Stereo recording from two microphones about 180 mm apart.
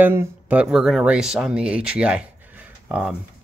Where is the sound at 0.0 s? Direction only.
10° right (ahead or behind).